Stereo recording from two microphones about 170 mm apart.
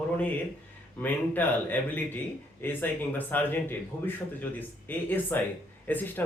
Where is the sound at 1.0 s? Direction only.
10° left (ahead or behind).